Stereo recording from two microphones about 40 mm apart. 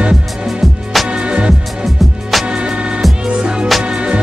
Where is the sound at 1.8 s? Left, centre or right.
Centre.